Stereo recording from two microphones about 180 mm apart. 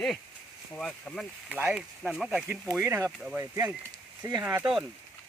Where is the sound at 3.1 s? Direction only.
5° right (ahead or behind).